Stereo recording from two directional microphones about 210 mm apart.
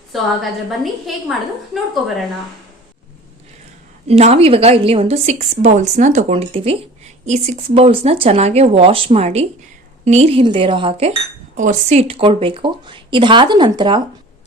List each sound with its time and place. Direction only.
1.0 s a woman's voice: centre (ahead or behind)
4.0 s a woman's voice: 30° right (ahead or behind)
11.5 s a woman's voice: 35° right (ahead or behind)